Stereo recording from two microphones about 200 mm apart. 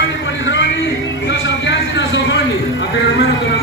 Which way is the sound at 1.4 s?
65° left (ahead or behind).